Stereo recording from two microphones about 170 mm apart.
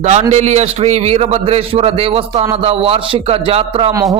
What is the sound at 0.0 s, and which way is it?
A man's voice, 40° right (ahead or behind).